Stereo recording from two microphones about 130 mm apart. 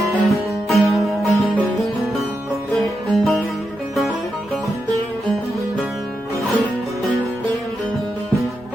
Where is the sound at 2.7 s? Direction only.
Centre (ahead or behind).